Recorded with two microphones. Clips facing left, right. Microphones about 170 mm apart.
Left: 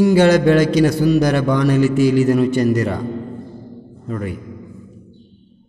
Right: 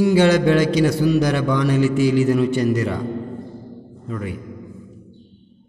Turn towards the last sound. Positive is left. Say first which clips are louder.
# left 3 dB
turn(degrees=45)  # may be behind; listen again after turning